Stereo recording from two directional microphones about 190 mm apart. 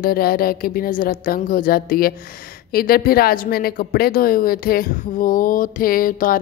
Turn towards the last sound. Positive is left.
turn(degrees=45)  # may be behind; listen again after turning